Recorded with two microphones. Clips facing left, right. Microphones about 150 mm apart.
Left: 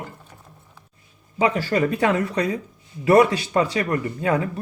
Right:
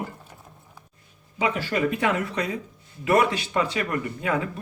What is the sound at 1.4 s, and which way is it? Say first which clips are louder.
A man's voice: left 4 dB; 35° left (ahead or behind).